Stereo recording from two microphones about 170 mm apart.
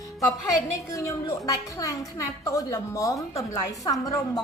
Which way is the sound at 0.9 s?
20° left (ahead or behind).